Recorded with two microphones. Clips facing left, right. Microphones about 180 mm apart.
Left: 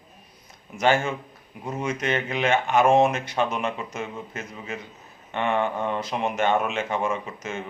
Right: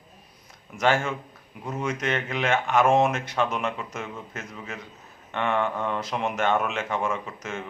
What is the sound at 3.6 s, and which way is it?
A man's voice, 15° left (ahead or behind).